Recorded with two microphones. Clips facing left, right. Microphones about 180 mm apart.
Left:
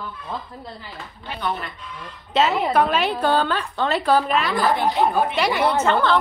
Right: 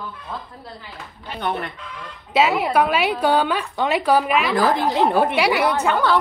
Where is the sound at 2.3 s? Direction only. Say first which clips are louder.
Right 1 dB; 5° right (ahead or behind).